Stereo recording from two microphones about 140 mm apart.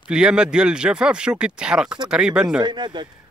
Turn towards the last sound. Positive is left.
turn(degrees=-35)  # may be behind; listen again after turning